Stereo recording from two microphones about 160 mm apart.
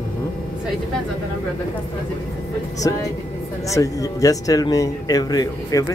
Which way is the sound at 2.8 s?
20° left (ahead or behind).